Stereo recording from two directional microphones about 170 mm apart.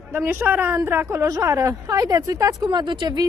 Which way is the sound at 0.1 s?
15° right (ahead or behind).